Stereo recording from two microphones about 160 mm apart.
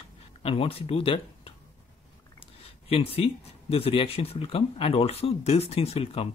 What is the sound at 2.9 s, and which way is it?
Speech, 35° left (ahead or behind).